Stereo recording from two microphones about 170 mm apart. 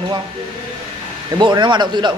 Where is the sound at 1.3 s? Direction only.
25° right (ahead or behind).